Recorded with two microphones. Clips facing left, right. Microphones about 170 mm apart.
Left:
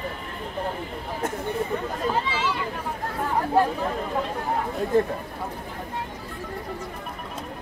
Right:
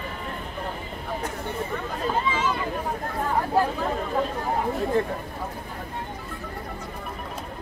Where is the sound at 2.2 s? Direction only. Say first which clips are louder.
Right 2 dB; 90° left.